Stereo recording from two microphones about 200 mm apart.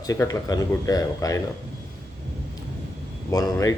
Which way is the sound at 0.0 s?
15° left (ahead or behind).